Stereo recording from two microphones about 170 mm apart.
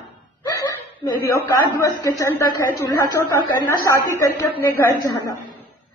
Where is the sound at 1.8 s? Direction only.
20° left (ahead or behind).